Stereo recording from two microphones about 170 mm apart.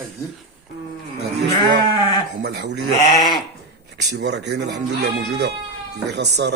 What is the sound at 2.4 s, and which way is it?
Speech, 80° right.